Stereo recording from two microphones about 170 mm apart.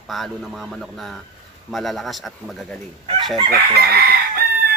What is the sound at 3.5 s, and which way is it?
Chicken, 65° right (ahead or behind).